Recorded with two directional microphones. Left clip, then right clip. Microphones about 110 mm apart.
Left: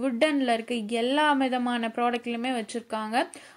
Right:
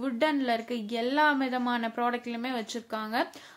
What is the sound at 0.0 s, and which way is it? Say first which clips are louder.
A woman's voice: left 3 dB; 30° left (ahead or behind).